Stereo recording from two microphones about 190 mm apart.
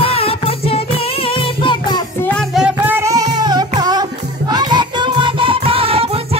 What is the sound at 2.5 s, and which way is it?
Music, 5° right (ahead or behind).